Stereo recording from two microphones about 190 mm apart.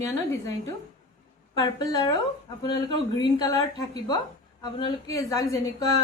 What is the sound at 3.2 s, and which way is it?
A woman's voice, 20° left (ahead or behind).